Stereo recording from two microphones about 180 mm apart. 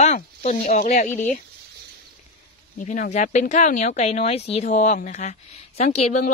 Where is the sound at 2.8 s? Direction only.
45° left (ahead or behind).